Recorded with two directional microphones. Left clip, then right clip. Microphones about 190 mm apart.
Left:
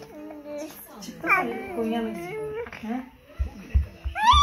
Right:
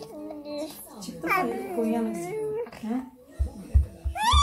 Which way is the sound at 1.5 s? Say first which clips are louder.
Right 1 dB; 20° right (ahead or behind).